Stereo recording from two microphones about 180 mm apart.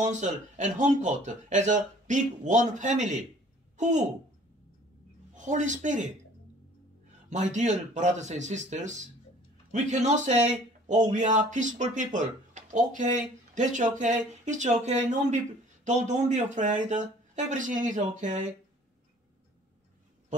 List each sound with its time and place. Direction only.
0.1 s speech: 45° right (ahead or behind)
5.3 s speech: 45° right (ahead or behind)
7.2 s speech: 40° right (ahead or behind)